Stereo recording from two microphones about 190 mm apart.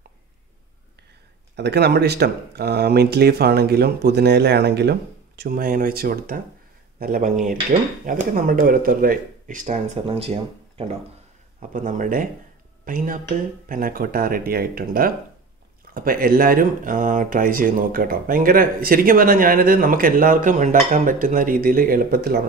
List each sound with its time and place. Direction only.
1.6 s speech: 60° right (ahead or behind)
10.0 s speech: 30° right (ahead or behind)
11.7 s speech: 40° right (ahead or behind)